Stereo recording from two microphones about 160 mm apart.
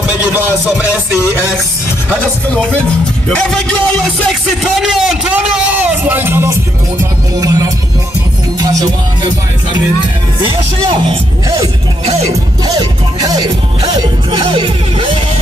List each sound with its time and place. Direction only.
0.3 s speech: 10° right (ahead or behind)
2.0 s music: 10° left (ahead or behind)
3.3 s speech: 5° left (ahead or behind); by 6.5 s 15° right (ahead or behind)
7.0 s music: 20° right (ahead or behind)
12.1 s music: 40° right (ahead or behind)
12.6 s music: 25° right (ahead or behind)